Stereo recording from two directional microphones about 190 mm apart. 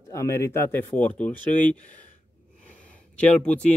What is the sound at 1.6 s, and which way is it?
Speech, 40° left (ahead or behind).